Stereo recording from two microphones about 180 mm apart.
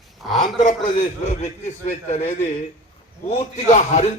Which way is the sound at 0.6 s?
45° left (ahead or behind).